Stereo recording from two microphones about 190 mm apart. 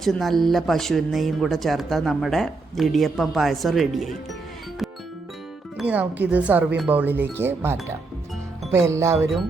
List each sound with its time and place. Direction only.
0.0 s speech: centre (ahead or behind)
5.7 s speech: 5° right (ahead or behind)